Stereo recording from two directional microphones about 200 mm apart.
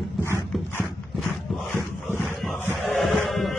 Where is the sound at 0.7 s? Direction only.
5° left (ahead or behind).